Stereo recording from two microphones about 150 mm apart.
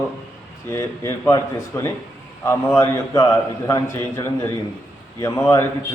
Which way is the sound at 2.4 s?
15° left (ahead or behind).